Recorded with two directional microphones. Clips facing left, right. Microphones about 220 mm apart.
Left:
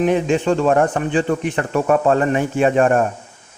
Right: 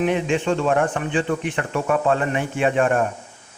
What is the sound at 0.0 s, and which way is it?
A man's voice, 40° left (ahead or behind).